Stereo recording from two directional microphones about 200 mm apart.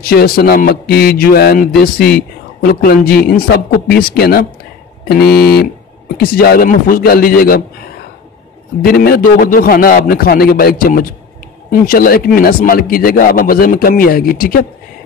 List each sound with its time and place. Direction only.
0.0 s a man's voice: 50° left (ahead or behind)
8.8 s a man's voice: 50° left (ahead or behind)